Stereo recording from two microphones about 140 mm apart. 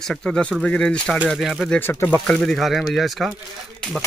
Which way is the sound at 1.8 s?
15° left (ahead or behind).